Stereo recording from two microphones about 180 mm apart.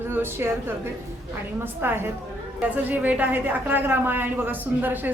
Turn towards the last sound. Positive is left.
turn(degrees=-10)  # may be behind; listen again after turning